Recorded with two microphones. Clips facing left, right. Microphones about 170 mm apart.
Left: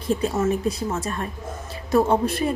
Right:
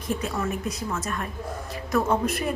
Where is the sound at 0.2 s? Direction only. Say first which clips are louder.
Left 6 dB; 25° left (ahead or behind).